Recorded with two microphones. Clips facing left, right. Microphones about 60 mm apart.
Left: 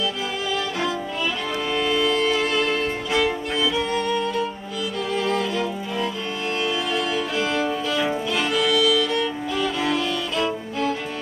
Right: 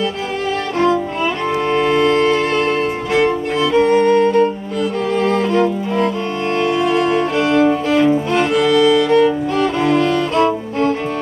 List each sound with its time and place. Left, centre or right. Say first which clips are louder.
0.7 s music: right 10 dB; right